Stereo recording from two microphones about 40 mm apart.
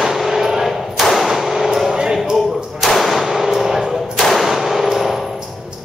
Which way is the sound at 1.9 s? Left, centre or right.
Centre.